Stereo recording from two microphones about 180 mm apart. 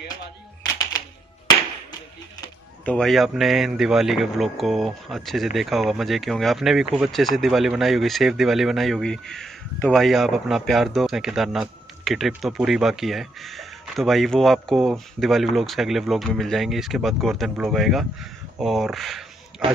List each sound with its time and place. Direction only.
2.8 s a man's voice: 5° left (ahead or behind)